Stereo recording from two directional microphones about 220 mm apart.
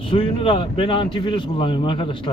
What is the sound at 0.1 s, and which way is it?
A man's voice, 25° left (ahead or behind).